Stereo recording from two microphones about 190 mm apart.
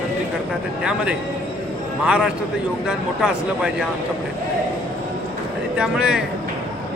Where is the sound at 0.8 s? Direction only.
5° right (ahead or behind).